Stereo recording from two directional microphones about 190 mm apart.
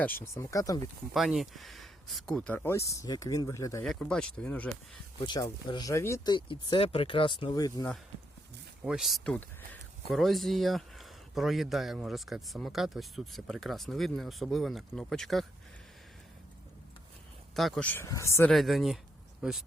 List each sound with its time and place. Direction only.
0.0 s speech: 10° left (ahead or behind)
1.1 s speech: centre (ahead or behind); by 3.8 s 15° left (ahead or behind)
3.8 s speech: 5° left (ahead or behind)
5.2 s speech: 20° left (ahead or behind)
8.8 s speech: centre (ahead or behind)
17.5 s speech: centre (ahead or behind)
18.5 s a man's voice: centre (ahead or behind)